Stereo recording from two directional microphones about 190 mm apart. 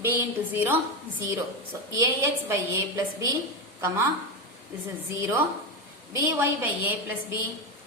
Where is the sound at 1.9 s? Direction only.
15° right (ahead or behind).